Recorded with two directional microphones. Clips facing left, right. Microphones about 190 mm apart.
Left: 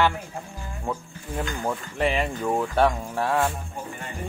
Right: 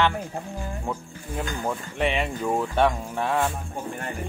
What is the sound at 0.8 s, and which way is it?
Speech, 10° right (ahead or behind).